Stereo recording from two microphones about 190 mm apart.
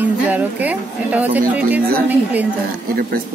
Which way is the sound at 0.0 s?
10° right (ahead or behind).